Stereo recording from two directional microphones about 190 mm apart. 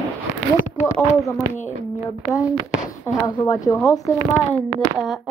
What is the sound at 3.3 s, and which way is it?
Speech, 20° left (ahead or behind).